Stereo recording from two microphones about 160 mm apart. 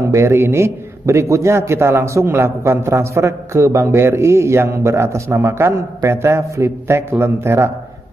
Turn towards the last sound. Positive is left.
turn(degrees=-15)  # may be behind; listen again after turning